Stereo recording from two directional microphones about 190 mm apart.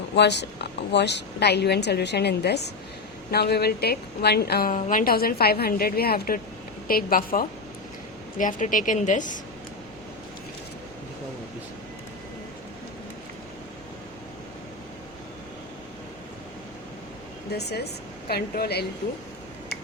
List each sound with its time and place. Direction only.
0.2 s a woman's voice: 65° left (ahead or behind); by 9.4 s 40° left (ahead or behind)
17.5 s a woman's voice: 60° left (ahead or behind)